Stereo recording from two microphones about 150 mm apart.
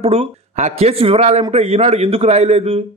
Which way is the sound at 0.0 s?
40° right (ahead or behind).